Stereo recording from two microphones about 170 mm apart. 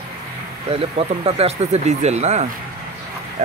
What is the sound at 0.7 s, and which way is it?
Speech, 35° right (ahead or behind).